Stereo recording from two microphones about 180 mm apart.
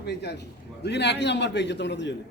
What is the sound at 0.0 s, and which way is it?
A man's voice, 65° left (ahead or behind).